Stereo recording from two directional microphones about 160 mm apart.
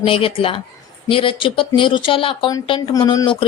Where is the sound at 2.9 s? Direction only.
20° left (ahead or behind).